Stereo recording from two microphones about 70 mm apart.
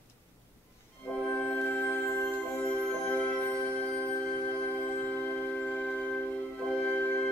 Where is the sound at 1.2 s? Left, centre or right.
Centre.